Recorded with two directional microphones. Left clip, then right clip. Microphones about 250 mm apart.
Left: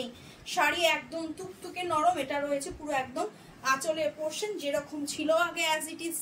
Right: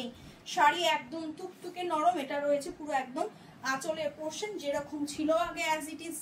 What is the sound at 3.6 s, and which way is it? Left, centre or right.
A woman's voice, left.